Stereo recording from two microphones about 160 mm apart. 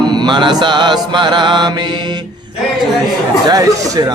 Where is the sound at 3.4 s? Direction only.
20° right (ahead or behind).